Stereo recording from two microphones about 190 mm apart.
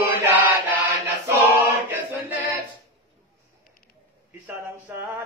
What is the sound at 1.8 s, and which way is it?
Choir, 10° right (ahead or behind).